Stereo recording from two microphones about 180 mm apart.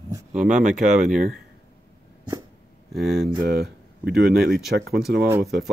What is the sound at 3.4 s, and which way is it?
Speech, 60° right (ahead or behind).